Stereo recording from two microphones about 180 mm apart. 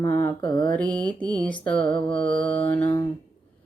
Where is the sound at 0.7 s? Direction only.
10° left (ahead or behind).